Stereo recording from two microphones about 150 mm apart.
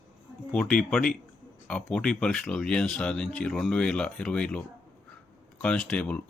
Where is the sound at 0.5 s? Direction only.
5° left (ahead or behind).